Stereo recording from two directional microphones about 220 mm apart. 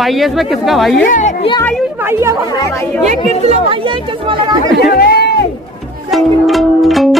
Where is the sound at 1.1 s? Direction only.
30° left (ahead or behind).